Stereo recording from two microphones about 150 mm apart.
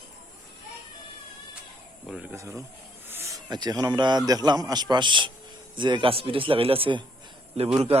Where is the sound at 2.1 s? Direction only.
10° right (ahead or behind).